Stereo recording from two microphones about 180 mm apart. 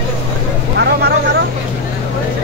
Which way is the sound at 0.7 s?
65° right (ahead or behind).